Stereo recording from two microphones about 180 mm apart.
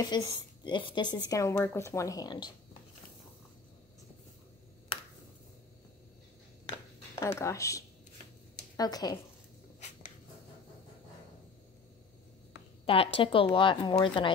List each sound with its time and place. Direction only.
0.0 s a woman's voice: 20° left (ahead or behind)
7.2 s a woman's voice: 15° left (ahead or behind)
12.8 s a woman's voice: 30° left (ahead or behind)